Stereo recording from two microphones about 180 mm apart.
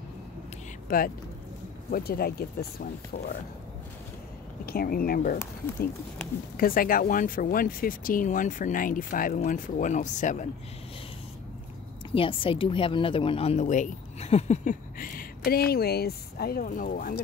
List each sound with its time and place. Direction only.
0.8 s speech: 50° left (ahead or behind)
4.6 s speech: 55° left (ahead or behind)
6.5 s speech: 50° left (ahead or behind)
12.1 s speech: 30° left (ahead or behind); by 17.2 s 50° left (ahead or behind)